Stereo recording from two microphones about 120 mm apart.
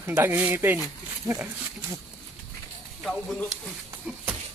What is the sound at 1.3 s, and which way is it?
Speech, 30° right (ahead or behind).